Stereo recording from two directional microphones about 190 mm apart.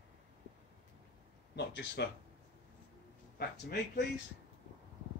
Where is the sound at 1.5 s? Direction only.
65° left (ahead or behind).